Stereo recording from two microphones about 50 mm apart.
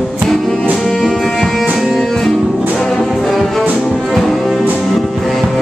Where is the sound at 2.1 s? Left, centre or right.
Centre.